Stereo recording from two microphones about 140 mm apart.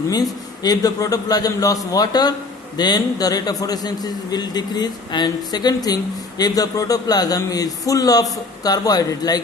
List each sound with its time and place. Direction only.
0.1 s a man's voice: 25° left (ahead or behind)